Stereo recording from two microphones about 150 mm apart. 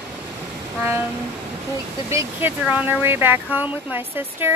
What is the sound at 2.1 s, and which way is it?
Speech, 15° right (ahead or behind).